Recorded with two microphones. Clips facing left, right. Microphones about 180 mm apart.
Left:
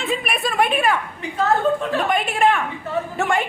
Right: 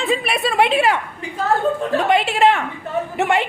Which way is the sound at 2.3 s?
75° right (ahead or behind).